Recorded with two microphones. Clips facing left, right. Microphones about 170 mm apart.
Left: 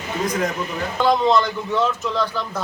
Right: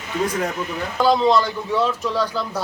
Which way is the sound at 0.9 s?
5° right (ahead or behind).